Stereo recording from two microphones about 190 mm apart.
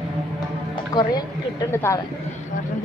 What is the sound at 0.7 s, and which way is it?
A woman's voice, 20° left (ahead or behind).